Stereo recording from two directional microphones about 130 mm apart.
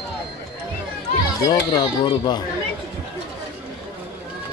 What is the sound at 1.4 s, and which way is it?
Speech, 35° left (ahead or behind).